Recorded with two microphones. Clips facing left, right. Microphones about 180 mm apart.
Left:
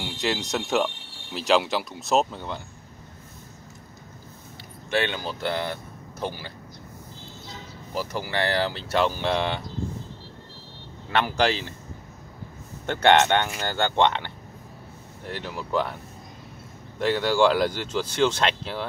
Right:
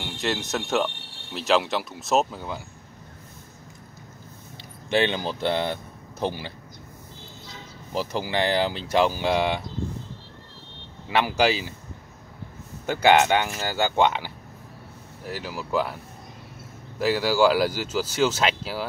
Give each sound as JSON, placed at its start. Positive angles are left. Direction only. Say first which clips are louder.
{"t": 0.0, "sound": "speech", "louder": "even", "side_deg": 0}
{"t": 4.8, "sound": "speech", "louder": "right 3 dB", "side_deg": -20}
{"t": 7.9, "sound": "speech", "louder": "right 2 dB", "side_deg": -20}
{"t": 11.1, "sound": "speech", "louder": "right 1 dB", "side_deg": -10}
{"t": 12.8, "sound": "speech", "louder": "even", "side_deg": -5}
{"t": 17.0, "sound": "speech", "louder": "even", "side_deg": -5}